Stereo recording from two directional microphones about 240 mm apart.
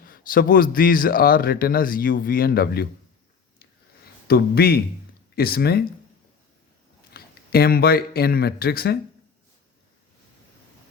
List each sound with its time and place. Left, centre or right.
0.0 s a man's voice: left
4.3 s a man's voice: left
7.1 s speech: left